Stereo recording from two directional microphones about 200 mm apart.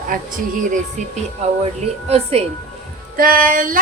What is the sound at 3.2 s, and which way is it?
Speech, 45° right (ahead or behind).